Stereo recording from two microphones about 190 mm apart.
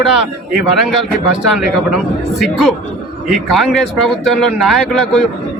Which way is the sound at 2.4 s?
Centre (ahead or behind).